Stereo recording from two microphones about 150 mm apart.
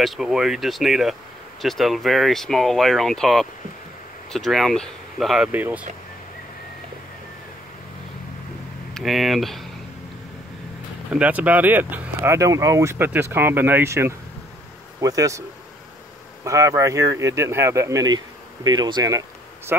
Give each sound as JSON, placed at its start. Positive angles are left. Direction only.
{"t": 0.0, "sound": "speech", "side_deg": 0}
{"t": 5.5, "sound": "speech", "side_deg": -10}
{"t": 8.9, "sound": "speech", "side_deg": 0}
{"t": 11.1, "sound": "speech", "side_deg": -10}
{"t": 16.4, "sound": "speech", "side_deg": -20}